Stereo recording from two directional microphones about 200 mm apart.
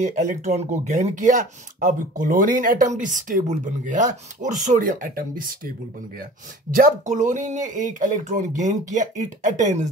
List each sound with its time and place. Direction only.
0.0 s speech: 35° right (ahead or behind)
6.7 s speech: 40° right (ahead or behind)